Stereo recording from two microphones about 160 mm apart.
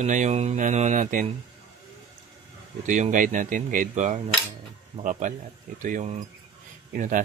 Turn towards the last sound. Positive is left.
turn(degrees=-55)  # may be behind; listen again after turning